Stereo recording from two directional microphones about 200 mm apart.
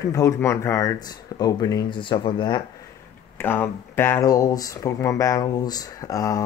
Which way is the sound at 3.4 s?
10° left (ahead or behind).